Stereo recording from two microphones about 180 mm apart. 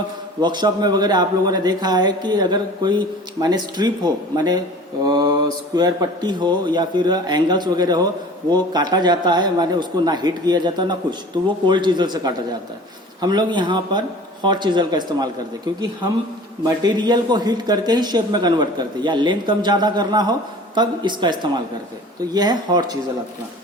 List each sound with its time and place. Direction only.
0.4 s speech: 25° right (ahead or behind)
16.6 s speech: 25° right (ahead or behind)